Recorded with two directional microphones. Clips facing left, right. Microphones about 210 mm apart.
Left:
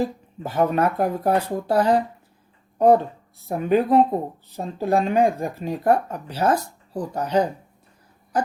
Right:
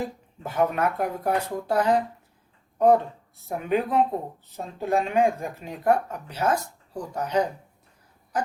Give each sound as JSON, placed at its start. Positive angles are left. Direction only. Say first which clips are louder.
{"t": 0.0, "sound": "speech", "louder": "left 6 dB", "side_deg": 35}